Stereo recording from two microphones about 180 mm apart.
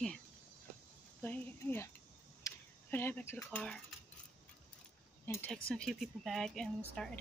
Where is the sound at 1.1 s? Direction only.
10° left (ahead or behind).